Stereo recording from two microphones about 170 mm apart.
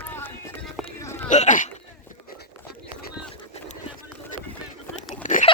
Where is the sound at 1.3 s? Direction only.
45° left (ahead or behind).